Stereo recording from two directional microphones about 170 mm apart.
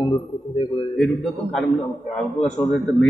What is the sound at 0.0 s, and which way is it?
Speech, 30° left (ahead or behind).